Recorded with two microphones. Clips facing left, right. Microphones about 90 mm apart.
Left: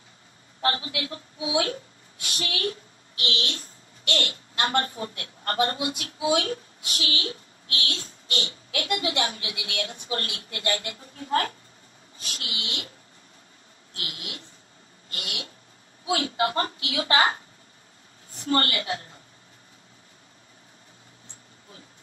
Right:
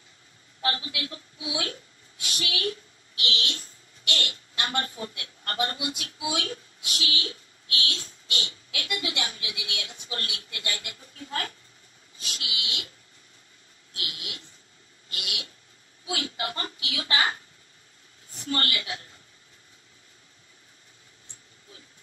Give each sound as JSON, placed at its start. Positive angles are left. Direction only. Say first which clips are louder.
{"t": 0.6, "sound": "a woman's voice", "louder": "left 3 dB", "side_deg": 35}
{"t": 13.9, "sound": "a woman's voice", "louder": "left 1 dB", "side_deg": 40}
{"t": 18.5, "sound": "a woman's voice", "louder": "left 5 dB", "side_deg": 40}